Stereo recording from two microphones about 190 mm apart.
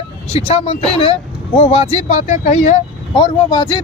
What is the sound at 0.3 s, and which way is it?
Speech, 30° left (ahead or behind).